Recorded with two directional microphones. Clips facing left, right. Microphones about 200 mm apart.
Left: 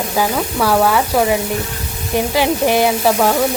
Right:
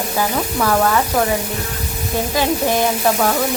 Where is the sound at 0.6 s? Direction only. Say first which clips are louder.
Left 2 dB; 5° left (ahead or behind).